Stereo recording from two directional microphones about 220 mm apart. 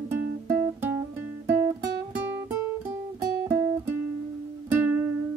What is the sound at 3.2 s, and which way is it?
Music, 15° right (ahead or behind).